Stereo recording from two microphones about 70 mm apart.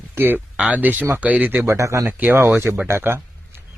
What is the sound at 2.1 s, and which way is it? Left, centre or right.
Speech, right.